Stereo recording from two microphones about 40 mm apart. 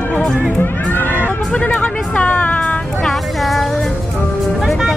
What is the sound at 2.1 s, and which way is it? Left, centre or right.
Music, left.